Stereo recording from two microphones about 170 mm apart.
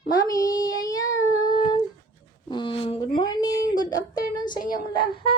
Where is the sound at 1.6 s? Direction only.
25° left (ahead or behind).